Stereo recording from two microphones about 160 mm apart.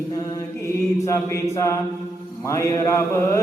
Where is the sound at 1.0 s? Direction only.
20° left (ahead or behind).